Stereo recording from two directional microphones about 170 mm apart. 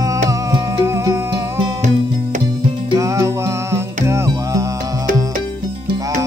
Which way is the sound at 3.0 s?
20° right (ahead or behind).